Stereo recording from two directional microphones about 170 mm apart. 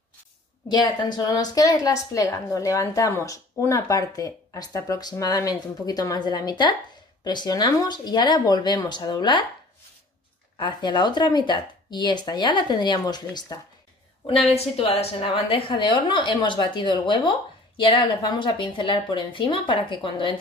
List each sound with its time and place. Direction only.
0.7 s a woman's voice: 25° left (ahead or behind)
10.6 s a woman's voice: 25° left (ahead or behind)
14.2 s a woman's voice: 35° left (ahead or behind)